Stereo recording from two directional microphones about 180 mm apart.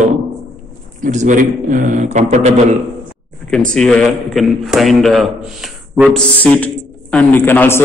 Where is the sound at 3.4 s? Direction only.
5° left (ahead or behind).